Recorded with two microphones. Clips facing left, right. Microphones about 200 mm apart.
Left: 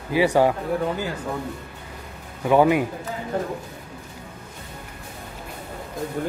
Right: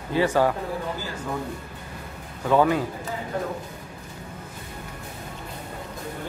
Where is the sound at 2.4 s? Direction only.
15° left (ahead or behind).